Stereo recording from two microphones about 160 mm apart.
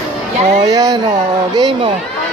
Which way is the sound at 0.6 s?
25° right (ahead or behind).